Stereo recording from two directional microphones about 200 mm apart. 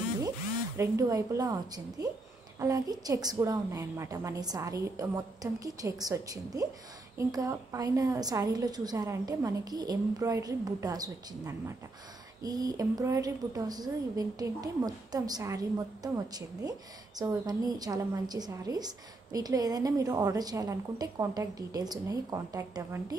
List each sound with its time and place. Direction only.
0.7 s a woman's voice: 15° right (ahead or behind)